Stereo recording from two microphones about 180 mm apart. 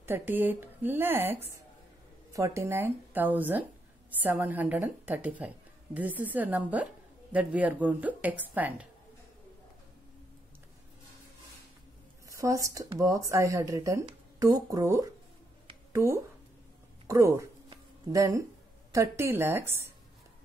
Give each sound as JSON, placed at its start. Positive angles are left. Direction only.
{"t": 0.0, "sound": "speech", "side_deg": -10}
{"t": 12.3, "sound": "speech", "side_deg": -20}
{"t": 17.6, "sound": "a sound", "side_deg": -20}
{"t": 18.9, "sound": "speech", "side_deg": -15}